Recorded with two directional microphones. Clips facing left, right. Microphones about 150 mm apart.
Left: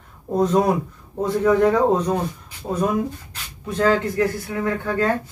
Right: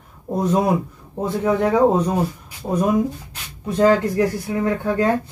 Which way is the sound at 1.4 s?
10° right (ahead or behind).